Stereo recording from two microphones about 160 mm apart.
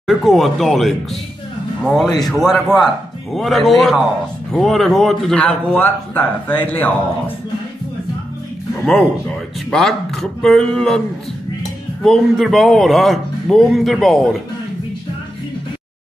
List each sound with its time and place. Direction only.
0.0 s a man's voice: centre (ahead or behind)
9.7 s a man's voice: centre (ahead or behind)
12.0 s a man's voice: centre (ahead or behind)